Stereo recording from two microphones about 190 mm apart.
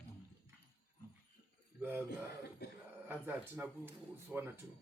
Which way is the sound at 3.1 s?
10° right (ahead or behind).